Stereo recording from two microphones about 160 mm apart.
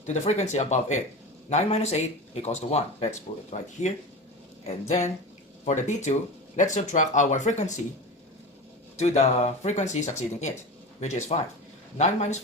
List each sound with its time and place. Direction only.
0.1 s speech: 45° left (ahead or behind)
4.6 s speech: 45° left (ahead or behind)
9.0 s speech: 45° left (ahead or behind)